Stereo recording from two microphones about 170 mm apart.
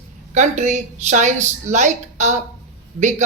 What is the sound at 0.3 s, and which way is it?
Speech, 45° right (ahead or behind).